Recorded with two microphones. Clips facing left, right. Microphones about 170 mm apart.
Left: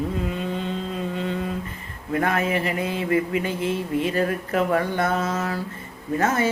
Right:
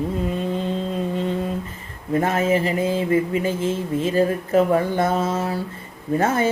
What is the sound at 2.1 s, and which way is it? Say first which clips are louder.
Speech: right 3 dB; 25° right (ahead or behind).